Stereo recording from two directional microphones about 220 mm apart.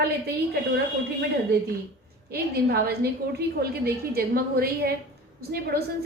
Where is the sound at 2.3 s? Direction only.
45° right (ahead or behind).